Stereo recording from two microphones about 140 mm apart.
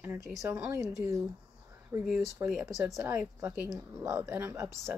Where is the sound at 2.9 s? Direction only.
20° right (ahead or behind).